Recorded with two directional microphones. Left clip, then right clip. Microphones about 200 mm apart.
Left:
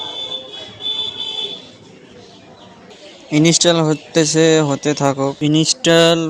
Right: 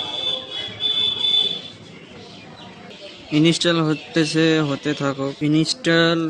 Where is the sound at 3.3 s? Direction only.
25° left (ahead or behind).